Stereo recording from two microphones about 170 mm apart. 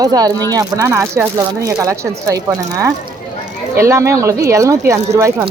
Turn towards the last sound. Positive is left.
turn(degrees=-15)  # may be behind; listen again after turning